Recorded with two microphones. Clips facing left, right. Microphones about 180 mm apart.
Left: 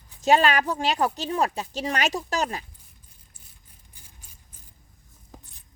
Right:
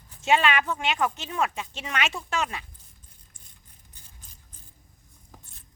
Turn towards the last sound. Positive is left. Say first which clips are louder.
# even
turn(degrees=10)  # may be behind; listen again after turning